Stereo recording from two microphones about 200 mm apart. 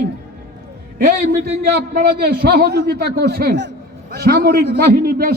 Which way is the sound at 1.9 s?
50° right (ahead or behind).